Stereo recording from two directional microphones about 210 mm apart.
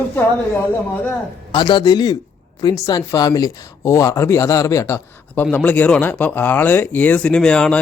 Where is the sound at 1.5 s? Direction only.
20° left (ahead or behind).